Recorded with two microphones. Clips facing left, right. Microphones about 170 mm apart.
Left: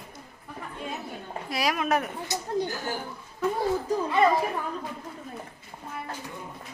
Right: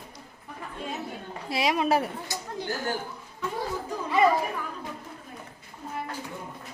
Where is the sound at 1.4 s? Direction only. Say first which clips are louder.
Right 2 dB; 25° right (ahead or behind).